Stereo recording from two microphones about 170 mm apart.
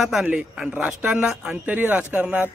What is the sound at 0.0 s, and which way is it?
Speech, 5° right (ahead or behind).